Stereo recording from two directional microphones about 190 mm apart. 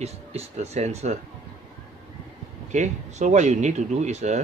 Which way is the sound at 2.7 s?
40° right (ahead or behind).